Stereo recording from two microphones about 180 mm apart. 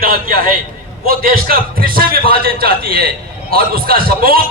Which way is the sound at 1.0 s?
55° right (ahead or behind).